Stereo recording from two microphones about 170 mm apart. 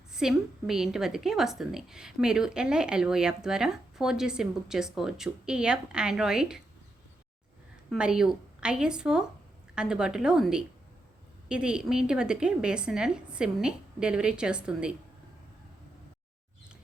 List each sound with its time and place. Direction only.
0.1 s a woman's voice: 5° right (ahead or behind)
7.9 s a woman's voice: 5° right (ahead or behind)